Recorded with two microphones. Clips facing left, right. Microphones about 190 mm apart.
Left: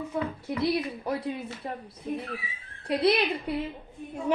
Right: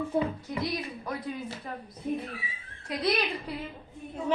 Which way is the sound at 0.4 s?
30° left (ahead or behind).